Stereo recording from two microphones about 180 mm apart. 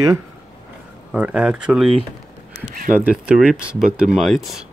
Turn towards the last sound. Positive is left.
turn(degrees=0)  # may be behind; listen again after turning